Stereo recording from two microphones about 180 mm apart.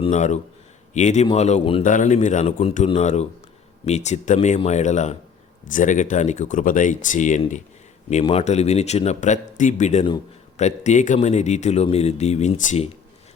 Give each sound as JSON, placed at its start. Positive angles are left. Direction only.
{"t": 0.0, "sound": "speech", "side_deg": 40}
{"t": 1.8, "sound": "speech", "side_deg": 45}